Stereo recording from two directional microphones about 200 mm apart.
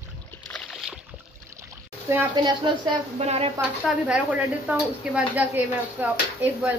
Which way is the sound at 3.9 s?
5° right (ahead or behind).